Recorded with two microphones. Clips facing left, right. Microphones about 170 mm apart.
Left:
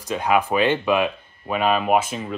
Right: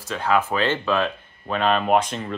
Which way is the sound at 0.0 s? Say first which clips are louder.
Left 2 dB; 15° left (ahead or behind).